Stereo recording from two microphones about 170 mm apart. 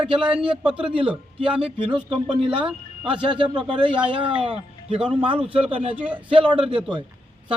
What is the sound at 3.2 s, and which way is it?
A man's voice, 30° right (ahead or behind).